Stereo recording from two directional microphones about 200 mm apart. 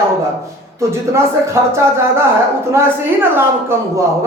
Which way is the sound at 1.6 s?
15° right (ahead or behind).